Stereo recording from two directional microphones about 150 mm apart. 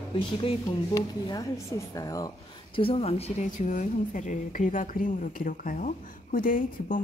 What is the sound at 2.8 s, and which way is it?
A woman's voice, 40° left (ahead or behind).